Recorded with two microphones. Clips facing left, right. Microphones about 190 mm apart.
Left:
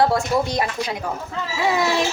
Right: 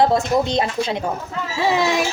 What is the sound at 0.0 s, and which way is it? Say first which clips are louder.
Speech: right 2 dB; 20° right (ahead or behind).